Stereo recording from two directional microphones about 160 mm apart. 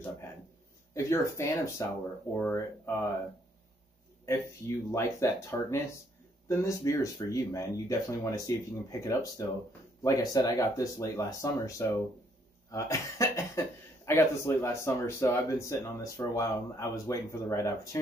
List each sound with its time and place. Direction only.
0.9 s speech: 20° left (ahead or behind)
4.3 s speech: 20° left (ahead or behind)